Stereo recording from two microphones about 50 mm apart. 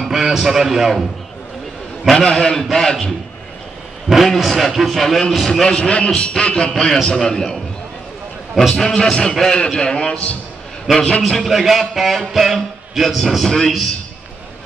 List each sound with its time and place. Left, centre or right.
0.0 s a man's voice: centre
2.1 s a man's voice: centre
4.3 s a man's voice: centre
5.4 s a man's voice: centre
6.7 s a man's voice: centre
11.2 s a man's voice: centre